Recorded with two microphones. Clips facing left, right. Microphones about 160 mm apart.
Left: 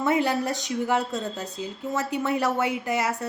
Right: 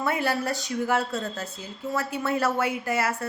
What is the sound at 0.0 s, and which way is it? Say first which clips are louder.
A woman's voice: left 3 dB; 20° left (ahead or behind).